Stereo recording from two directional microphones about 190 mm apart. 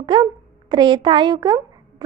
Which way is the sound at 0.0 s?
25° right (ahead or behind).